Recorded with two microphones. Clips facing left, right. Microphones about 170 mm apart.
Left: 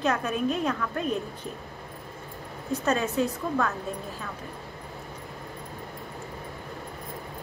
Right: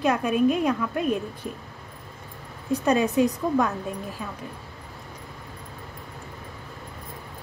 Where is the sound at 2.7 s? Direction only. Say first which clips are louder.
Right 5 dB; 15° right (ahead or behind).